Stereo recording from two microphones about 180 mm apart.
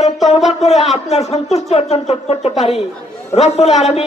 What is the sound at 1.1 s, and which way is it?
A man's voice, 35° left (ahead or behind).